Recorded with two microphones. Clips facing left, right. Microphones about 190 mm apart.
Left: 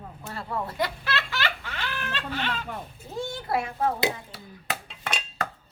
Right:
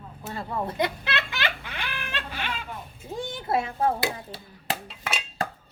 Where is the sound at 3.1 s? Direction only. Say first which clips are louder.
Right 1 dB; 15° right (ahead or behind).